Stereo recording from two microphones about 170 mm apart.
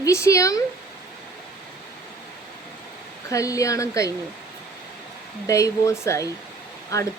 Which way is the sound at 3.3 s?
20° left (ahead or behind).